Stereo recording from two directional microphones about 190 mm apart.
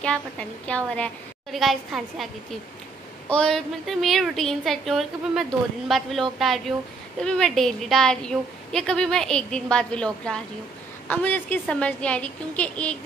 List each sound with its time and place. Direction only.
0.0 s a woman's voice: 5° left (ahead or behind)
3.3 s a woman's voice: 5° left (ahead or behind)